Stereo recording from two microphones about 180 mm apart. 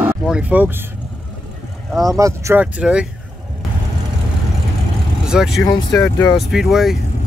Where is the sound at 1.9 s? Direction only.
Centre (ahead or behind).